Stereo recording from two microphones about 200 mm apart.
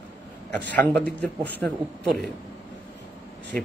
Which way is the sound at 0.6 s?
10° left (ahead or behind).